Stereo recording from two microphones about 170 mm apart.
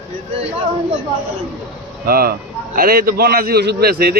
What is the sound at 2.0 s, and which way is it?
A man's voice, 60° right (ahead or behind).